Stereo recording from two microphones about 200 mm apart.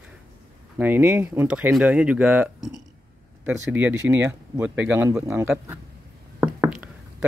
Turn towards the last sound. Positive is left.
turn(degrees=-5)  # may be behind; listen again after turning